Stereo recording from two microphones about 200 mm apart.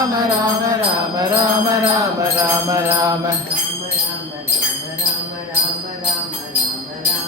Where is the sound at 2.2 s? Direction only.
15° right (ahead or behind).